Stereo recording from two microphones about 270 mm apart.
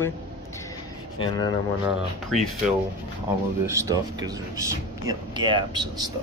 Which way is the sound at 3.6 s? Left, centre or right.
Centre.